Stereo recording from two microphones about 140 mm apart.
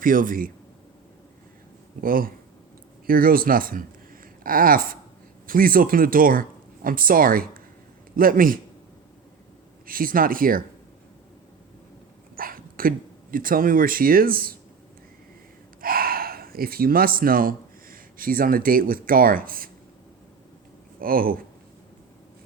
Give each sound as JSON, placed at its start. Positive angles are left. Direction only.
{"t": 0.0, "sound": "a man's voice", "side_deg": -80}
{"t": 2.0, "sound": "a man's voice", "side_deg": -90}
{"t": 9.8, "sound": "speech", "side_deg": -90}
{"t": 12.4, "sound": "dog", "side_deg": -90}
{"t": 13.3, "sound": "speech", "side_deg": -85}
{"t": 15.8, "sound": "speech", "side_deg": -90}
{"t": 21.0, "sound": "speech", "side_deg": -90}